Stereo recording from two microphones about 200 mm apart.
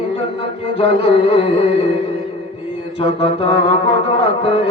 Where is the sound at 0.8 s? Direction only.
30° left (ahead or behind).